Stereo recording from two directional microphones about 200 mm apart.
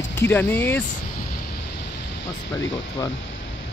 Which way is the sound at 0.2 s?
10° left (ahead or behind).